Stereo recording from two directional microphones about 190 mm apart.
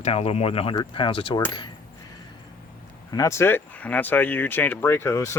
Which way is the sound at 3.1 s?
15° left (ahead or behind).